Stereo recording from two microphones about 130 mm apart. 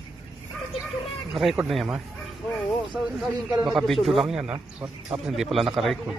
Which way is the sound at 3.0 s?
5° right (ahead or behind).